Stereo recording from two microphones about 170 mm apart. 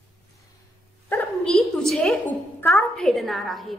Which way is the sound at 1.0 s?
15° left (ahead or behind).